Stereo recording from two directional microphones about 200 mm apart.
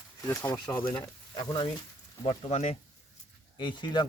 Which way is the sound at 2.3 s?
30° left (ahead or behind).